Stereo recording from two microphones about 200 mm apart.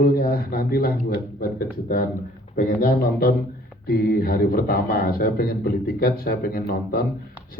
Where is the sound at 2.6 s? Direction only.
45° left (ahead or behind).